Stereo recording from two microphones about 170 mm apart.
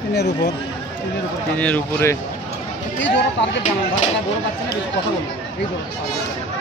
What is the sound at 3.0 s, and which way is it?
Speech, 90° left.